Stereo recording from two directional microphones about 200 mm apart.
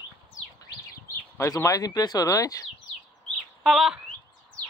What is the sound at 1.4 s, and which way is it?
Speech, 15° left (ahead or behind).